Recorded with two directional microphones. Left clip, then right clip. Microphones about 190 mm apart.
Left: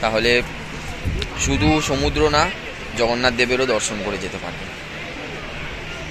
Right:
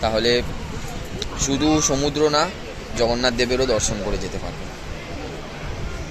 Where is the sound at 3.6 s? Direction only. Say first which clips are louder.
Left 1 dB; 25° left (ahead or behind).